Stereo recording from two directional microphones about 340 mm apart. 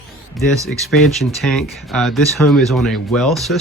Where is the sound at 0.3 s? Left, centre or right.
Centre.